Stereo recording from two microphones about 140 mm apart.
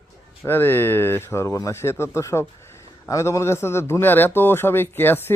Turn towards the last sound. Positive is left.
turn(degrees=15)  # may be behind; listen again after turning